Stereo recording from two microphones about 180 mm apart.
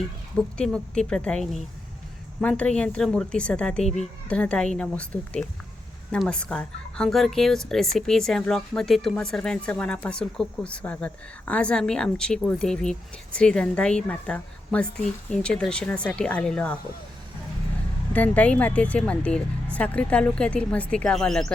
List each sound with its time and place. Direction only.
0.3 s speech: 5° left (ahead or behind)
3.8 s a child's voice: 40° left (ahead or behind)
4.3 s a woman's voice: 5° left (ahead or behind)
18.1 s a woman's voice: 10° left (ahead or behind)